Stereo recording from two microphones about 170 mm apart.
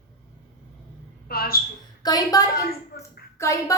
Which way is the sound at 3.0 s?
15° left (ahead or behind).